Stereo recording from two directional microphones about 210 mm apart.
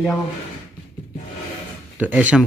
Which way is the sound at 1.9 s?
5° right (ahead or behind).